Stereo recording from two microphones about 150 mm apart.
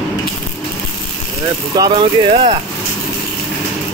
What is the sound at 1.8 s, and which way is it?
Speech, 35° right (ahead or behind).